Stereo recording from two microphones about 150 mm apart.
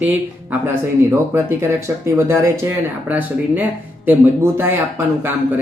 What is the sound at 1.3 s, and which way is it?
Speech, 15° right (ahead or behind).